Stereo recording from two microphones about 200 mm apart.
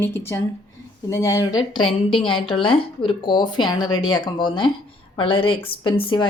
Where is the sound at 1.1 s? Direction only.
15° left (ahead or behind).